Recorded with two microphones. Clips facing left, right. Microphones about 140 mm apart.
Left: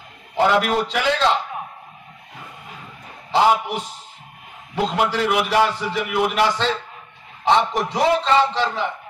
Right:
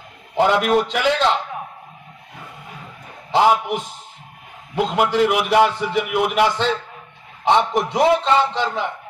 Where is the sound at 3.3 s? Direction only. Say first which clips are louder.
Right 1 dB; 15° right (ahead or behind).